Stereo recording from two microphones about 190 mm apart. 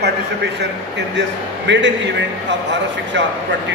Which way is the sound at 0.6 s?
65° right (ahead or behind).